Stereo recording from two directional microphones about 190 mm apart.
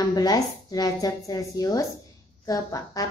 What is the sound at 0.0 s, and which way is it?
A woman's voice, 20° left (ahead or behind).